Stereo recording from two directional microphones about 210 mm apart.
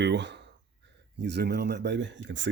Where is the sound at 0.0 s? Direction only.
55° right (ahead or behind).